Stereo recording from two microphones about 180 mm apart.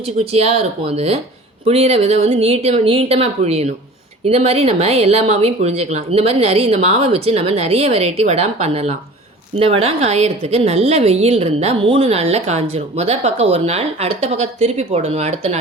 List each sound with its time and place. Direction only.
0.2 s speech: 35° right (ahead or behind)